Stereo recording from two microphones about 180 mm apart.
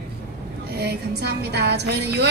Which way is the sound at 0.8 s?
65° right (ahead or behind).